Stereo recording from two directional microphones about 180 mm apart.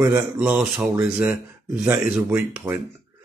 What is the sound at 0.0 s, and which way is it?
Speech, 10° right (ahead or behind).